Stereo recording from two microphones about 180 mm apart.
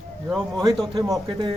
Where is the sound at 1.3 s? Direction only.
30° right (ahead or behind).